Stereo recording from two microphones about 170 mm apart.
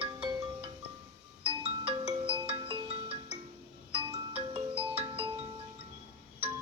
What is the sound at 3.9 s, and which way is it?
Marimba, 35° right (ahead or behind).